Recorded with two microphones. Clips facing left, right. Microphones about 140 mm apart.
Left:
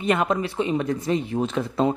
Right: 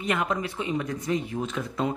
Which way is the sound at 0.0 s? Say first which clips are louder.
Left 5 dB; 30° left (ahead or behind).